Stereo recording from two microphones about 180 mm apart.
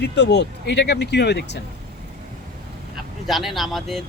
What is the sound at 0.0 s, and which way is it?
Speech, 70° left (ahead or behind).